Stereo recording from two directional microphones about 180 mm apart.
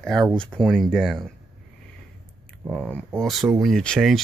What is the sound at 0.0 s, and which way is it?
Speech, centre (ahead or behind).